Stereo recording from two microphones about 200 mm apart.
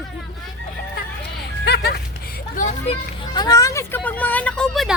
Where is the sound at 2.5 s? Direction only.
40° left (ahead or behind).